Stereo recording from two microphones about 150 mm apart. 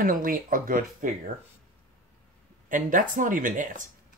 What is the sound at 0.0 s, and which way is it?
Speech, 70° right (ahead or behind).